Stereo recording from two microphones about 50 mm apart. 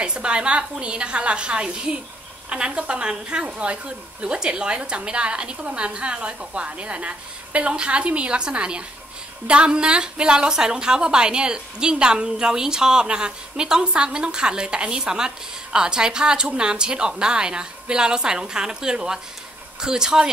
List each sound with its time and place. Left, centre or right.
0.0 s a woman's voice: right